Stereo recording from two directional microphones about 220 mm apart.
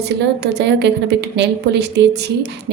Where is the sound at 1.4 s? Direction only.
50° right (ahead or behind).